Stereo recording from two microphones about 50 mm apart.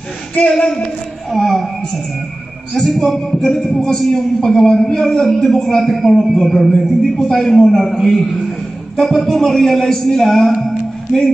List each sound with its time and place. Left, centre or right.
0.5 s speech: centre
1.3 s speech: centre
2.7 s a man's voice: centre